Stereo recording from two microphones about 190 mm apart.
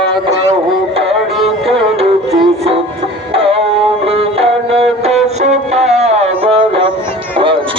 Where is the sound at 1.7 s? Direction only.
30° right (ahead or behind).